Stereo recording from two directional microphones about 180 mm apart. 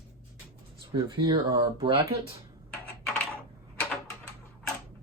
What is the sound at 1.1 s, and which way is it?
Speech, 20° right (ahead or behind).